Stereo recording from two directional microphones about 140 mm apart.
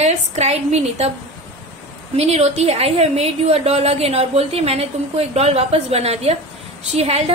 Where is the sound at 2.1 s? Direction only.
50° right (ahead or behind).